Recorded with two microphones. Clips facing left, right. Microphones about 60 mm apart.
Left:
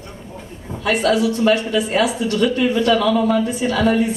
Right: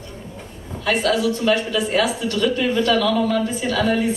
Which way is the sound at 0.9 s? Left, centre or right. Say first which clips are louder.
Left 2 dB; centre.